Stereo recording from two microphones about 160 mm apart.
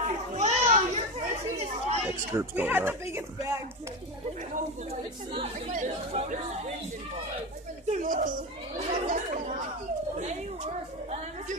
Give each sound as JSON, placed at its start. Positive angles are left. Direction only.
{"t": 0.0, "sound": "children playing", "side_deg": -45}
{"t": 2.0, "sound": "speech", "side_deg": -15}
{"t": 5.7, "sound": "speech", "side_deg": -50}
{"t": 7.9, "sound": "a sound", "side_deg": -55}